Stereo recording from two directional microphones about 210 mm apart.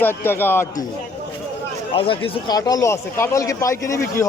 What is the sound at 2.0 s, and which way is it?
Speech, 25° left (ahead or behind).